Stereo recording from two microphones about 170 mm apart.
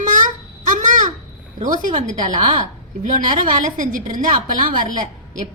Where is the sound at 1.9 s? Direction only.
45° right (ahead or behind).